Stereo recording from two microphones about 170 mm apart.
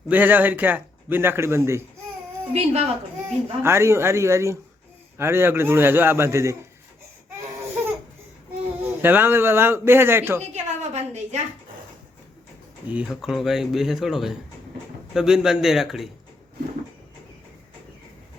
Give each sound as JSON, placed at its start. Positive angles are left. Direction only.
{"t": 0.1, "sound": "a man's voice", "side_deg": -10}
{"t": 2.5, "sound": "a woman's voice", "side_deg": -40}
{"t": 3.6, "sound": "a man's voice", "side_deg": -15}
{"t": 8.8, "sound": "a man's voice", "side_deg": -10}
{"t": 10.5, "sound": "a sound", "side_deg": -40}
{"t": 12.9, "sound": "speech", "side_deg": -5}